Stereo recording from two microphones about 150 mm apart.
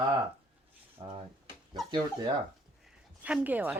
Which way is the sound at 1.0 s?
35° right (ahead or behind).